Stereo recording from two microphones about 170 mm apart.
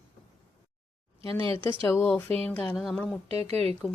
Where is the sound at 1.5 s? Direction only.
15° left (ahead or behind); by 4.0 s centre (ahead or behind).